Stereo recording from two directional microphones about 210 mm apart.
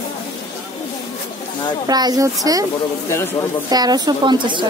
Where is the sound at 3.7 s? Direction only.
20° right (ahead or behind).